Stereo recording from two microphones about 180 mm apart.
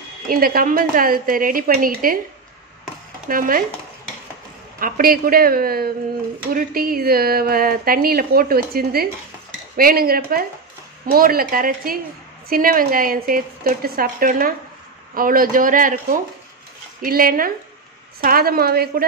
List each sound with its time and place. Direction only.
0.3 s speech: 55° right (ahead or behind)
3.3 s speech: 50° right (ahead or behind)
4.7 s a woman's voice: 50° right (ahead or behind)